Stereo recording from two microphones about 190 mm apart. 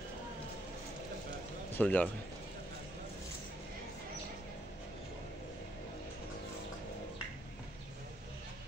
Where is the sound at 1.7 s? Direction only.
5° left (ahead or behind).